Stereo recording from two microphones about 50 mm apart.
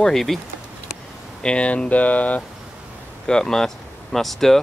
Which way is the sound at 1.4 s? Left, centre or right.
Left.